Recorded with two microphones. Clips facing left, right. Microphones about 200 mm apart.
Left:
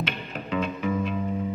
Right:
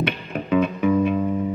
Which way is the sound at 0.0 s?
55° right (ahead or behind).